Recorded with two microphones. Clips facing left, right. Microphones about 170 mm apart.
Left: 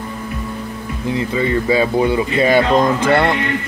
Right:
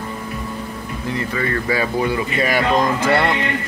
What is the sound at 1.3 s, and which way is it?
Speech, 20° left (ahead or behind).